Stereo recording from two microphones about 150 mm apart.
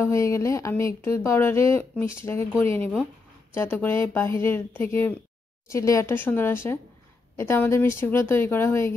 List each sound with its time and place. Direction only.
0.0 s speech: 20° left (ahead or behind)